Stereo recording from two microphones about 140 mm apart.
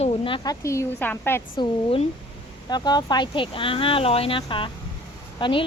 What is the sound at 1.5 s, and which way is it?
A woman's voice, 40° left (ahead or behind).